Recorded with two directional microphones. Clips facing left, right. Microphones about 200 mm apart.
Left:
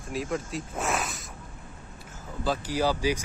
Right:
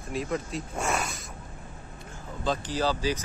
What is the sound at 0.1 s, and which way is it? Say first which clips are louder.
Speech: even; centre (ahead or behind).